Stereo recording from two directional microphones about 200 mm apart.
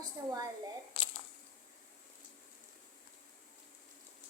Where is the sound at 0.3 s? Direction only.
20° right (ahead or behind).